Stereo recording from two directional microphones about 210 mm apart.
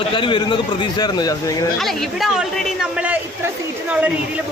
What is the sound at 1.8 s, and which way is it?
Speech, centre (ahead or behind).